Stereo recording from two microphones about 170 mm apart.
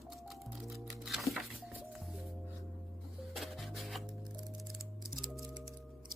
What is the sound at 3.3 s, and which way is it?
Music, centre (ahead or behind).